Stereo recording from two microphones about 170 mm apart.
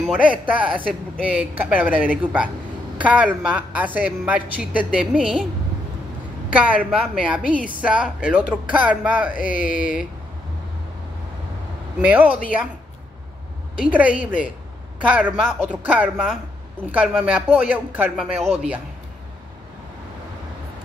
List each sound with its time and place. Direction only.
0.0 s a woman's voice: 5° right (ahead or behind)
6.5 s a woman's voice: 5° right (ahead or behind)
9.4 s speech: 50° left (ahead or behind)
12.0 s a woman's voice: 5° right (ahead or behind)
13.7 s a woman's voice: 10° right (ahead or behind)